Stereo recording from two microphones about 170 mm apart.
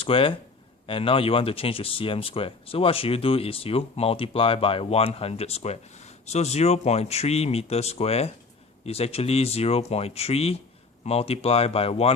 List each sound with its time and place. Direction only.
0.0 s speech: 30° left (ahead or behind)